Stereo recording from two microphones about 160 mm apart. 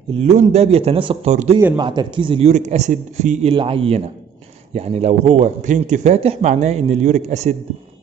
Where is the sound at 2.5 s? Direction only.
45° right (ahead or behind).